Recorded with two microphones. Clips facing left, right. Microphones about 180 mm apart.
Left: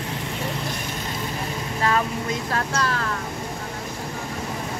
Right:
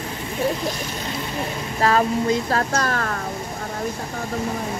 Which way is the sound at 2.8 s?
50° right (ahead or behind).